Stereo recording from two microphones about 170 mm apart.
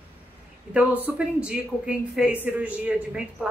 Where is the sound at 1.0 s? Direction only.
5° right (ahead or behind).